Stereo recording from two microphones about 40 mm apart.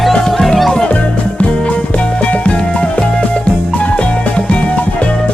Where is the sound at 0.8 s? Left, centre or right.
Left.